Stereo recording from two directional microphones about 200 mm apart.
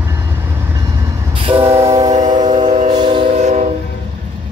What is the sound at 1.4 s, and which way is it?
Train, 30° right (ahead or behind).